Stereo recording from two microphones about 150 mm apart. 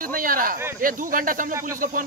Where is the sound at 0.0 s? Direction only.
70° right (ahead or behind).